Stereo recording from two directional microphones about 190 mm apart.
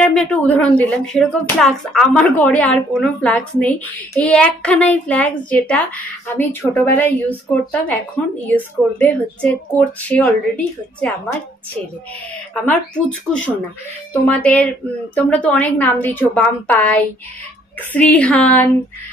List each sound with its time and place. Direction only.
0.0 s speech: 5° left (ahead or behind)
12.6 s speech: 5° left (ahead or behind)